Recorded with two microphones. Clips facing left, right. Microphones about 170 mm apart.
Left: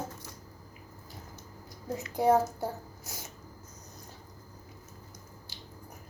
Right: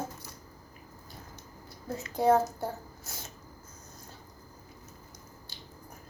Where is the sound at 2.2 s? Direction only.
10° left (ahead or behind).